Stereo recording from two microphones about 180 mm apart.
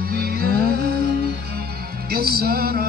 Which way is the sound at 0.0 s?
55° right (ahead or behind).